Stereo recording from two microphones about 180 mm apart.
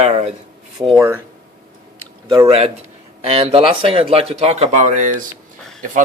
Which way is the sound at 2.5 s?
35° right (ahead or behind).